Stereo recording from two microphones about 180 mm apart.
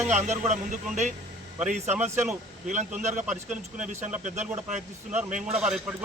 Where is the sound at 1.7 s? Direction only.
40° right (ahead or behind).